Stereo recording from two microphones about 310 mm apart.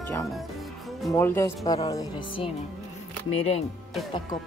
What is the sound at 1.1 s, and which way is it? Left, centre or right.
Speech, centre.